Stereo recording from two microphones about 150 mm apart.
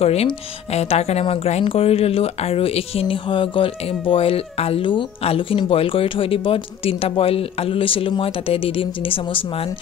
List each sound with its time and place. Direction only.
0.0 s speech: 45° left (ahead or behind)